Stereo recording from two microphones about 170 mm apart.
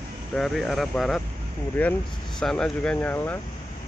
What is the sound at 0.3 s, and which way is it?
Speech, centre (ahead or behind).